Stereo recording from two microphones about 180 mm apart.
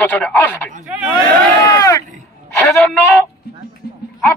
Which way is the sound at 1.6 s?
20° left (ahead or behind).